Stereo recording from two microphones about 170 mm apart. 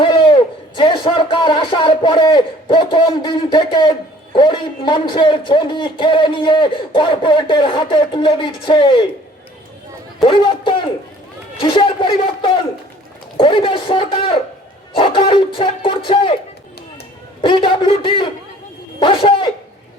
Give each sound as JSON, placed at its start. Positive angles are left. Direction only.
{"t": 0.0, "sound": "a sound", "side_deg": 30}
{"t": 0.8, "sound": "a man's voice", "side_deg": 30}
{"t": 10.2, "sound": "a man's voice", "side_deg": 30}
{"t": 17.4, "sound": "a man's voice", "side_deg": 30}